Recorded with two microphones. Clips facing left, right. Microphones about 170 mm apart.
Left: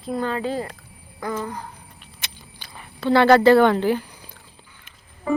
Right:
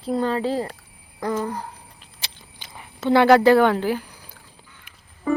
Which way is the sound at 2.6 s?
20° right (ahead or behind).